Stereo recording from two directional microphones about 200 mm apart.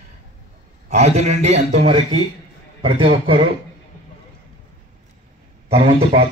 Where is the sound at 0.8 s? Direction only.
35° right (ahead or behind).